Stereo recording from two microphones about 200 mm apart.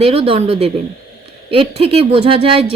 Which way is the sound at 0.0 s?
30° right (ahead or behind).